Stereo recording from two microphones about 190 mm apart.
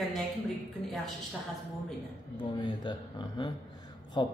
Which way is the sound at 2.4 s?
25° left (ahead or behind).